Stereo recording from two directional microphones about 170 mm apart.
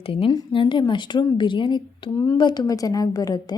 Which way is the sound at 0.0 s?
35° left (ahead or behind).